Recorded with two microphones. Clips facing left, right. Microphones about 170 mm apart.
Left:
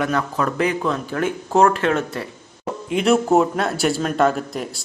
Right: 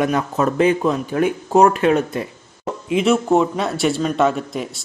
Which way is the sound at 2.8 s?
Centre (ahead or behind).